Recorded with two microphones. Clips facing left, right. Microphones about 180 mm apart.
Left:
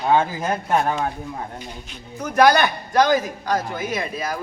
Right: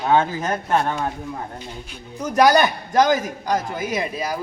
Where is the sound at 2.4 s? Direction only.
20° right (ahead or behind).